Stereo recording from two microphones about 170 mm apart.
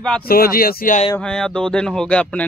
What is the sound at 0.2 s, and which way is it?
Speech, 60° left (ahead or behind).